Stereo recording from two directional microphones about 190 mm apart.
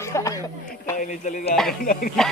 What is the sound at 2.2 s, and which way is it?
Speech, centre (ahead or behind).